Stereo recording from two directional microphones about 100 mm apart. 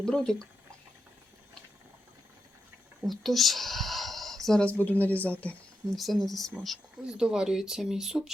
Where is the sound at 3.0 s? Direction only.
Centre (ahead or behind).